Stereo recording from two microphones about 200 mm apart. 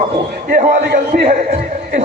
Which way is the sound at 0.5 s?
45° right (ahead or behind).